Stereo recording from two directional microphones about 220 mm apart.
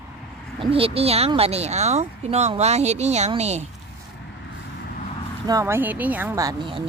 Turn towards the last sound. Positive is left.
turn(degrees=-20)  # may be behind; listen again after turning